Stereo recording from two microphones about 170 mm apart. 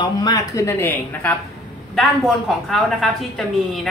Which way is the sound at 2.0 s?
Centre (ahead or behind).